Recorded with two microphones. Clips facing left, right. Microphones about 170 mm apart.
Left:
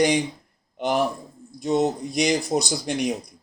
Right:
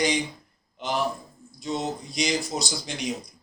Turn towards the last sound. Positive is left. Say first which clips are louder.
# left 6 dB
turn(degrees=55)  # may be behind; listen again after turning